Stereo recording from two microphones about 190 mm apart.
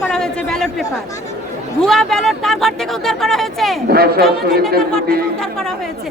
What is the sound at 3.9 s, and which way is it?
Speech, 55° right (ahead or behind).